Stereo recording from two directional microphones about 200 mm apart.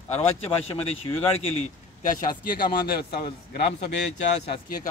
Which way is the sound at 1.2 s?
30° left (ahead or behind).